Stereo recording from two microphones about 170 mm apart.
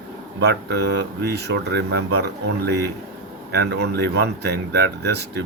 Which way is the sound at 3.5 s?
80° right.